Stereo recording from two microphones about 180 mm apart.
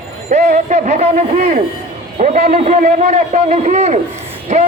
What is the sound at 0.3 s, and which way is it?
A man's voice, 40° right (ahead or behind).